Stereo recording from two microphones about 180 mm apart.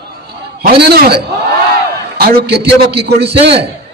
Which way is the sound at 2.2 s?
60° right (ahead or behind).